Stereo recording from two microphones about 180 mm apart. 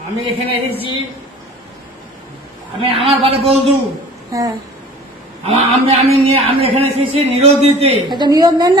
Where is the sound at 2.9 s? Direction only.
30° right (ahead or behind).